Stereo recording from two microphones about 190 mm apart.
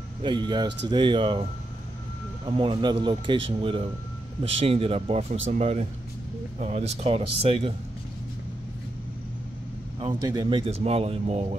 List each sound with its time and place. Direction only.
0.2 s speech: 25° right (ahead or behind)
9.9 s speech: 25° right (ahead or behind)